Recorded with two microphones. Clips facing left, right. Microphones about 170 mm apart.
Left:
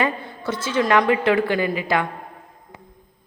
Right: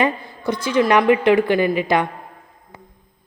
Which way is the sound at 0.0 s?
15° right (ahead or behind).